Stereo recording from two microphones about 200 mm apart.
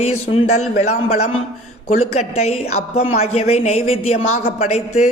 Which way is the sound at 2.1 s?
30° left (ahead or behind).